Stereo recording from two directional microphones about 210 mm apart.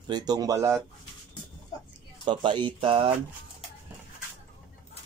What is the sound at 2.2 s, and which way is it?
Speech, 20° right (ahead or behind).